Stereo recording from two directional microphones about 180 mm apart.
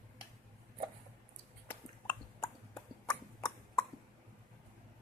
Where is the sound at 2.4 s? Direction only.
20° left (ahead or behind).